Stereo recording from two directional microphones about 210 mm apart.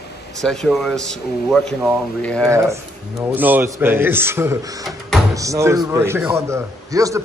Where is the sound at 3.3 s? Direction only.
10° right (ahead or behind).